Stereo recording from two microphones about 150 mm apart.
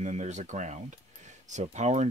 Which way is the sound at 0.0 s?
50° right (ahead or behind).